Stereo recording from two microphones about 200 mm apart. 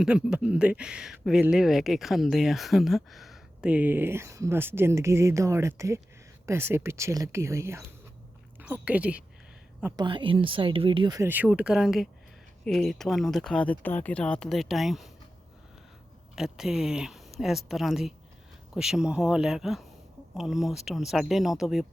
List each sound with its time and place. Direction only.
0.0 s a woman's voice: 5° right (ahead or behind)
9.8 s speech: 20° right (ahead or behind); by 15.1 s centre (ahead or behind)
16.3 s speech: 5° right (ahead or behind)